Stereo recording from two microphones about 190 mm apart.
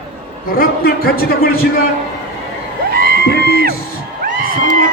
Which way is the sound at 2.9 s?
55° right (ahead or behind).